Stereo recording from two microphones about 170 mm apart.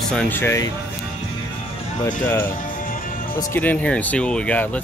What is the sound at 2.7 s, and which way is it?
Music, 55° left (ahead or behind).